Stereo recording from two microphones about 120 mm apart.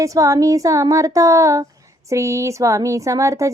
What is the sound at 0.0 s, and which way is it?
Speech, 25° right (ahead or behind).